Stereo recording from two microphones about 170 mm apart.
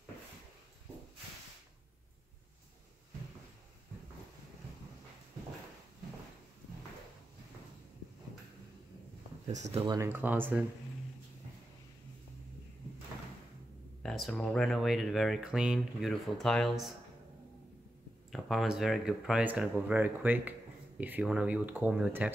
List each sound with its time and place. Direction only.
9.5 s speech: 40° right (ahead or behind)
9.8 s speech: 15° right (ahead or behind)
14.0 s speech: centre (ahead or behind)
18.3 s speech: centre (ahead or behind)